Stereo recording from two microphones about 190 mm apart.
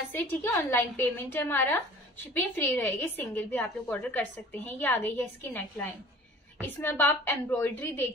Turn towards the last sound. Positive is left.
turn(degrees=10)  # may be behind; listen again after turning